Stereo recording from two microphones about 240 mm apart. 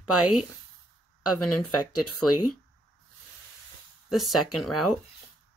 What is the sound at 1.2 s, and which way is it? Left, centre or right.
Speech, left.